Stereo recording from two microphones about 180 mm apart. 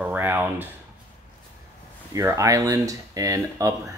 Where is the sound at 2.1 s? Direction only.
15° right (ahead or behind).